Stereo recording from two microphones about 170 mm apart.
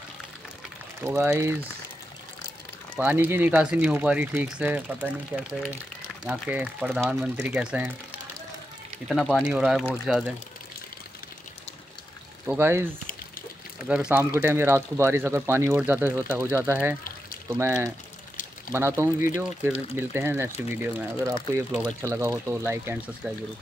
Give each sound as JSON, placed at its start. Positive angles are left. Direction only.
{"t": 1.0, "sound": "speech", "side_deg": -15}
{"t": 3.0, "sound": "speech", "side_deg": -10}
{"t": 9.1, "sound": "speech", "side_deg": 0}
{"t": 12.4, "sound": "speech", "side_deg": -15}